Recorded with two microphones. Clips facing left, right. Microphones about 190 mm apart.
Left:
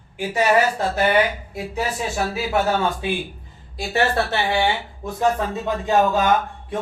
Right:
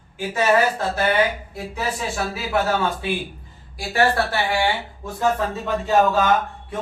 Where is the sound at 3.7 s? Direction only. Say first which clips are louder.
Right 1 dB; 20° left (ahead or behind).